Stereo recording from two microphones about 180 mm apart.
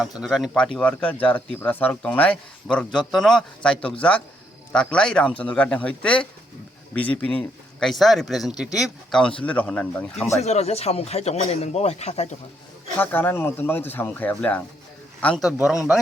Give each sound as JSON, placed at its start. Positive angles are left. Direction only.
{"t": 0.2, "sound": "speech", "side_deg": 0}
{"t": 10.4, "sound": "speech", "side_deg": 35}
{"t": 13.0, "sound": "speech", "side_deg": 10}